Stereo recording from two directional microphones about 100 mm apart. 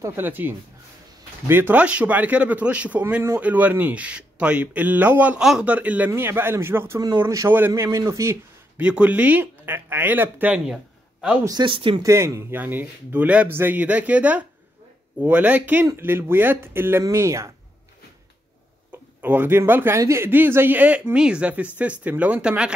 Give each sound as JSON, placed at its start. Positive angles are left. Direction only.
{"t": 0.0, "sound": "speech", "side_deg": -20}
{"t": 5.4, "sound": "a man's voice", "side_deg": -5}
{"t": 5.7, "sound": "speech", "side_deg": -15}
{"t": 8.7, "sound": "speech", "side_deg": -15}
{"t": 11.6, "sound": "speech", "side_deg": -60}
{"t": 12.0, "sound": "speech", "side_deg": -30}
{"t": 18.9, "sound": "speech", "side_deg": -20}